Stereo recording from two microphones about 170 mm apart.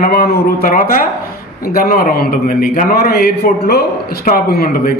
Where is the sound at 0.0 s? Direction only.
60° left (ahead or behind).